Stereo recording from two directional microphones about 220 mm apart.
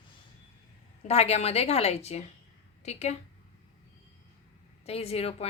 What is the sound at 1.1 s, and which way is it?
A woman's voice, 30° left (ahead or behind).